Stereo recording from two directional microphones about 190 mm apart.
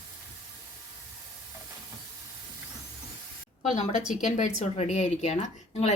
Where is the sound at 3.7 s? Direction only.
35° left (ahead or behind).